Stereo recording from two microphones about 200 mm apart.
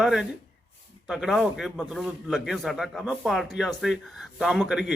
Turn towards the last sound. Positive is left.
turn(degrees=0)  # may be behind; listen again after turning